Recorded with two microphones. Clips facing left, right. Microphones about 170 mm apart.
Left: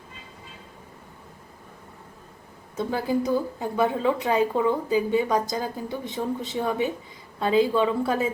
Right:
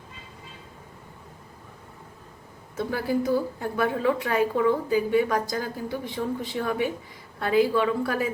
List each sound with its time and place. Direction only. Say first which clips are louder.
2.7 s a woman's voice: left 1 dB; 20° left (ahead or behind)